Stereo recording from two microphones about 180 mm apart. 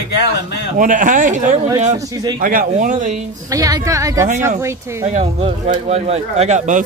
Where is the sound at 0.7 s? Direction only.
45° right (ahead or behind).